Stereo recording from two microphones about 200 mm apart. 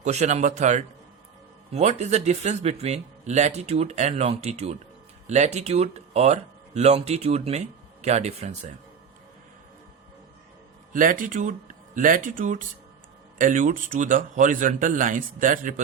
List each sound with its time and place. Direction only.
0.0 s speech: 35° right (ahead or behind)
10.9 s speech: 40° right (ahead or behind)